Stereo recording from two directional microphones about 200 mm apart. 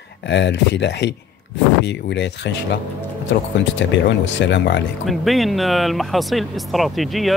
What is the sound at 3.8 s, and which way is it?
Speech, 60° left (ahead or behind).